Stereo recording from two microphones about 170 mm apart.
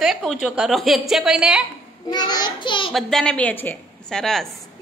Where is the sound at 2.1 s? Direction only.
25° left (ahead or behind).